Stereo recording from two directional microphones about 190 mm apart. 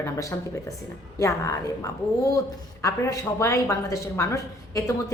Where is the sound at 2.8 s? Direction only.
15° left (ahead or behind).